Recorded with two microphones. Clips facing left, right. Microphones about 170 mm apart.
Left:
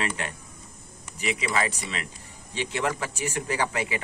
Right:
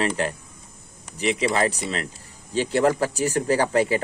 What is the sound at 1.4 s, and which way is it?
A man's voice, 40° right (ahead or behind).